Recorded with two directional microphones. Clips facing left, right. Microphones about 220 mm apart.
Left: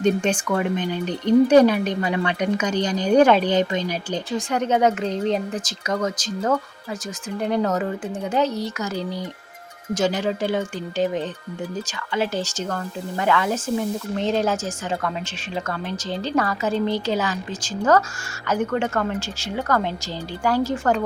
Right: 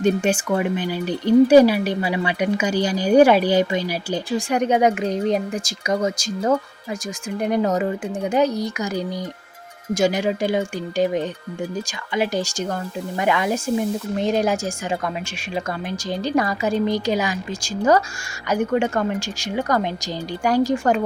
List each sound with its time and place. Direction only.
0.0 s speech: 5° right (ahead or behind)